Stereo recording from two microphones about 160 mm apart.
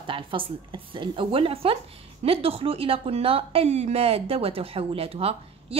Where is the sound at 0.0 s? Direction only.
30° right (ahead or behind).